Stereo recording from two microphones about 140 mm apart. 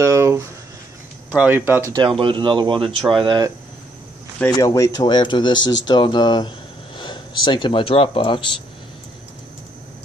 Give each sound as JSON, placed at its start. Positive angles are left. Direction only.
{"t": 0.0, "sound": "a sound", "side_deg": -20}
{"t": 1.3, "sound": "speech", "side_deg": -15}
{"t": 2.0, "sound": "speech", "side_deg": -35}
{"t": 4.5, "sound": "speech", "side_deg": 25}